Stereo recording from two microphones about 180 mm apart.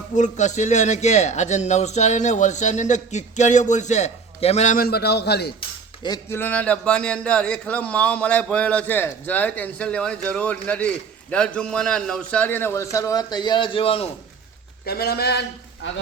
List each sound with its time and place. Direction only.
0.2 s speech: 40° left (ahead or behind); by 5.5 s 65° left (ahead or behind)
5.5 s cutlery: 25° left (ahead or behind)
6.2 s speech: 10° left (ahead or behind); by 14.1 s 30° left (ahead or behind)
14.8 s a man's voice: 60° left (ahead or behind)
15.8 s a man's voice: 90° left